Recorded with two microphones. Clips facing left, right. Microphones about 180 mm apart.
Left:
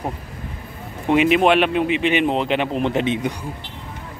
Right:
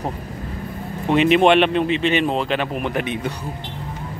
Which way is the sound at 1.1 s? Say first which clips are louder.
Right 1 dB; 10° left (ahead or behind).